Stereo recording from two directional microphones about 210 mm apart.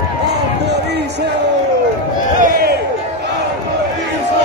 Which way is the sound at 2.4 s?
45° right (ahead or behind).